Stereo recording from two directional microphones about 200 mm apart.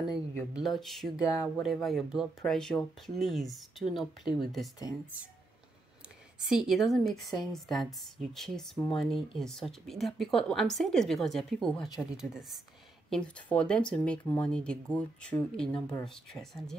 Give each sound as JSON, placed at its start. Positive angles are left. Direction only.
{"t": 0.3, "sound": "speech", "side_deg": 10}
{"t": 6.4, "sound": "speech", "side_deg": -5}
{"t": 8.7, "sound": "speech", "side_deg": 20}
{"t": 9.0, "sound": "speech", "side_deg": 0}